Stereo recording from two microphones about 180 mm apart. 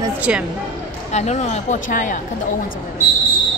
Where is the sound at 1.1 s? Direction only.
40° left (ahead or behind).